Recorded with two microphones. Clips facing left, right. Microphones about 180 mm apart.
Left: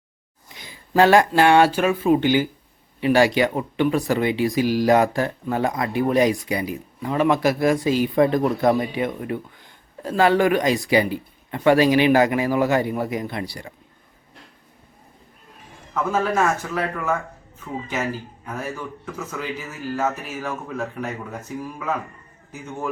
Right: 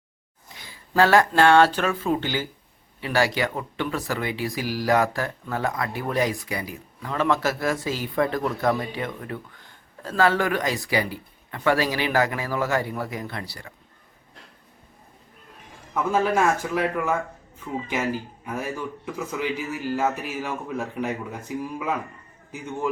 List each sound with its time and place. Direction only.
0.6 s speech: 20° left (ahead or behind)
16.1 s a man's voice: 15° right (ahead or behind)
18.4 s a man's voice: 10° right (ahead or behind)